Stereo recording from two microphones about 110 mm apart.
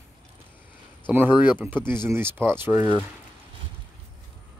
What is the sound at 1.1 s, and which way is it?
Speech, 15° right (ahead or behind).